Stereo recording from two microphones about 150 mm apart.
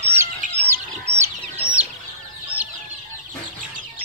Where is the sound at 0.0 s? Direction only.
15° right (ahead or behind).